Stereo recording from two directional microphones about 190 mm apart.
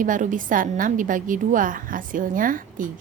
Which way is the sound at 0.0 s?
45° right (ahead or behind).